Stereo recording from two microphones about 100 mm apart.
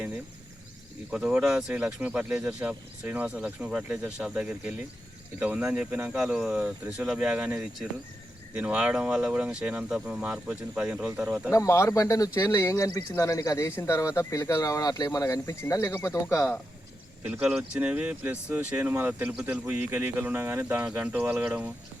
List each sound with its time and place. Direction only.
1.1 s speech: 10° right (ahead or behind)
11.5 s speech: 30° left (ahead or behind)
17.6 s speech: 15° right (ahead or behind)